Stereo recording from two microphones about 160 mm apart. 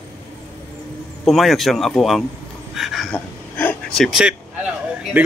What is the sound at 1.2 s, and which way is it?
Speech, centre (ahead or behind).